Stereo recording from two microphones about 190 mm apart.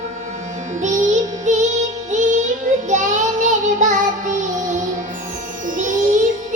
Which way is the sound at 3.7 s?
40° right (ahead or behind).